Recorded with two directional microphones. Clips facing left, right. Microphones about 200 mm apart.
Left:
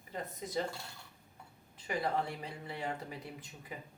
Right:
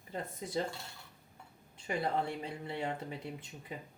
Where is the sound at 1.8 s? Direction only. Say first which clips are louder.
Right 1 dB; 25° right (ahead or behind).